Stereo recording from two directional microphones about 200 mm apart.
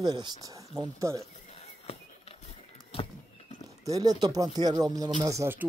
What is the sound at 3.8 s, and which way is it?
Speech, 20° right (ahead or behind).